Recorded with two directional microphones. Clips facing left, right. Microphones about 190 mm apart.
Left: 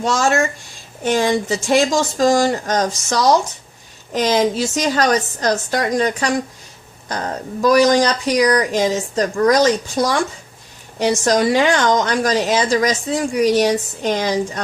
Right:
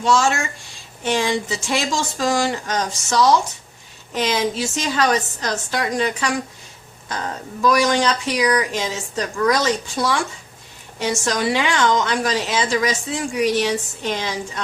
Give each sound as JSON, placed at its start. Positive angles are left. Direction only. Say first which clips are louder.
{"t": 0.0, "sound": "a woman's voice", "louder": "left 2 dB", "side_deg": 40}